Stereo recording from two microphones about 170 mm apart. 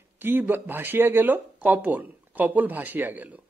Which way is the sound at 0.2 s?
10° right (ahead or behind).